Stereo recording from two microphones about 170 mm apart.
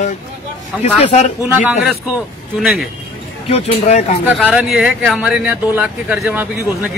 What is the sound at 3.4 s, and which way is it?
Speech, 35° left (ahead or behind).